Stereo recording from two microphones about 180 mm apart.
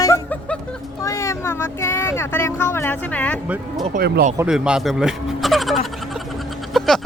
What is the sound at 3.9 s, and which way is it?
Speech, 45° right (ahead or behind).